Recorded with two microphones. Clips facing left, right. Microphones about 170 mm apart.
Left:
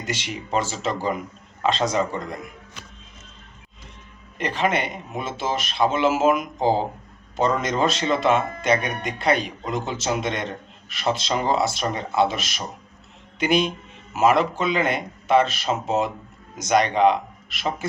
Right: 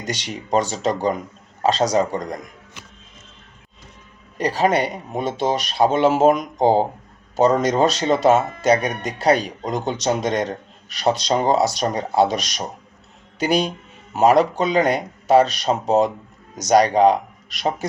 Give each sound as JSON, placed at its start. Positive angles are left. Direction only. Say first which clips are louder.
{"t": 0.7, "sound": "speech", "louder": "right 4 dB", "side_deg": -40}
{"t": 4.4, "sound": "a man's voice", "louder": "right 5 dB", "side_deg": -35}
{"t": 13.4, "sound": "speech", "louder": "right 1 dB", "side_deg": -40}